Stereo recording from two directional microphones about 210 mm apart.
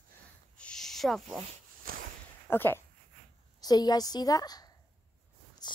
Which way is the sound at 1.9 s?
40° right (ahead or behind).